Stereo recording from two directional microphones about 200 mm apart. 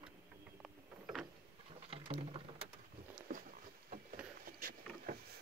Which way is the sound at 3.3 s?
45° right (ahead or behind).